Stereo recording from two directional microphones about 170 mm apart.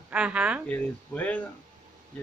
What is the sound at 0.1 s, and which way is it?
Speech, 5° right (ahead or behind).